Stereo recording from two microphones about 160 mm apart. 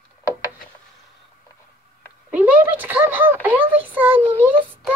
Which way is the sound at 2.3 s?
10° right (ahead or behind).